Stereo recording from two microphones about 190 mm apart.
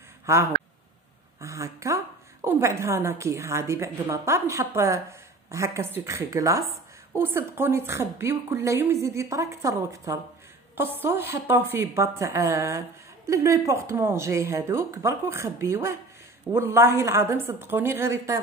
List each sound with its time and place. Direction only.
1.4 s a woman's voice: 15° right (ahead or behind)